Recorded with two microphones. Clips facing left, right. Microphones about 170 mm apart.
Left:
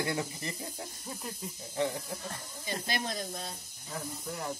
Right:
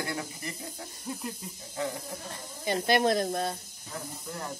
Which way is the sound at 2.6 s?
65° right (ahead or behind).